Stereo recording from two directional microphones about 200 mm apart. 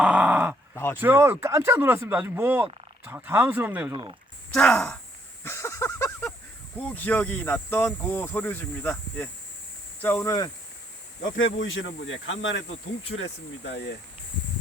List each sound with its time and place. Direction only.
0.0 s a sound: 5° right (ahead or behind)
0.9 s speech: 10° right (ahead or behind)
4.5 s speech: 5° left (ahead or behind)
5.4 s a sound: 10° left (ahead or behind)
6.8 s speech: 10° left (ahead or behind)
11.3 s speech: 65° left (ahead or behind)